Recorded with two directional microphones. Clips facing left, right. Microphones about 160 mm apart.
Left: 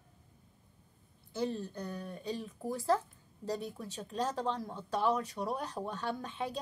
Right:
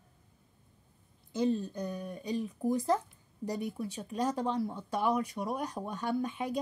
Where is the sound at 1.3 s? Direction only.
15° right (ahead or behind).